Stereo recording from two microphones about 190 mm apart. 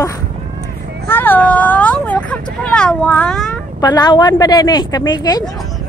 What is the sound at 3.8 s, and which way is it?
A woman's voice, 20° left (ahead or behind).